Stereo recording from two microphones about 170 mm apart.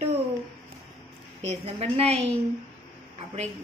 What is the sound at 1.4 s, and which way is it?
Speech, 40° right (ahead or behind).